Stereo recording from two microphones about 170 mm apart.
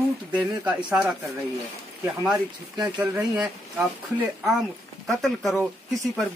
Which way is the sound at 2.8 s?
5° right (ahead or behind).